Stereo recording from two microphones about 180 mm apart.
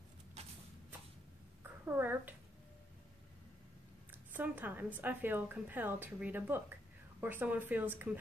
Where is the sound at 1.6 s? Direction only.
10° right (ahead or behind).